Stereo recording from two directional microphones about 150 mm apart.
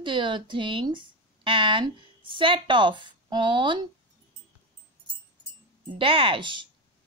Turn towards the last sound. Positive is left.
turn(degrees=-30)  # may be behind; listen again after turning